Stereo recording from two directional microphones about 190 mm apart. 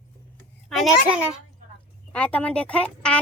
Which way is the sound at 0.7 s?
Centre (ahead or behind).